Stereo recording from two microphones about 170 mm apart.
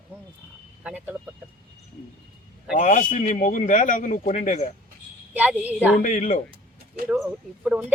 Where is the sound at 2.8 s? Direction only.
45° left (ahead or behind).